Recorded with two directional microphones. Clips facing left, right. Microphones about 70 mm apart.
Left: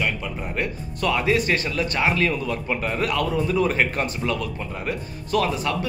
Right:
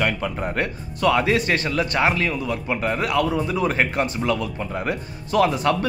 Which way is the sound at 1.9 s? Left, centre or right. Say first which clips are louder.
Even; right.